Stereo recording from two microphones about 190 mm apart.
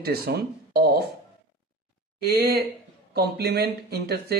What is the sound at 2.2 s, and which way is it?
Speech, 55° right (ahead or behind).